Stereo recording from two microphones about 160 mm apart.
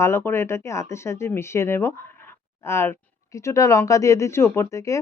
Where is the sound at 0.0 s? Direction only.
15° left (ahead or behind).